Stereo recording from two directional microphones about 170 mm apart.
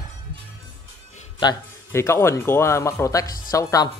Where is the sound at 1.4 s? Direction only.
20° left (ahead or behind).